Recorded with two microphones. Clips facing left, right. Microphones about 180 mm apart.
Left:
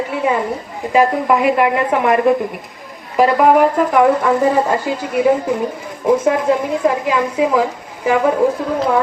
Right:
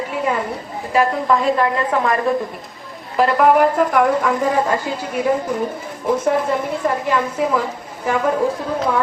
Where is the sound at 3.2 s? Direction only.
5° left (ahead or behind).